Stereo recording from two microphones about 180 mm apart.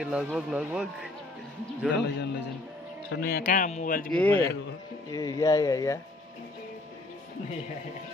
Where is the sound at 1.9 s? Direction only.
75° left (ahead or behind).